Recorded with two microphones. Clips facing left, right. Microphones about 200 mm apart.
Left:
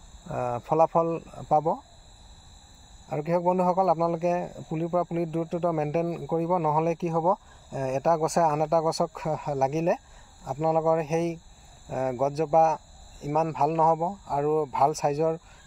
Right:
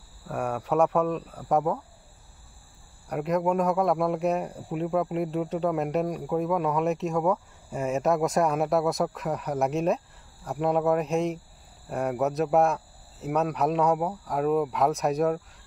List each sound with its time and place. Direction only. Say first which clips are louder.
0.3 s speech: even; centre (ahead or behind)
3.1 s speech: left 1 dB; centre (ahead or behind)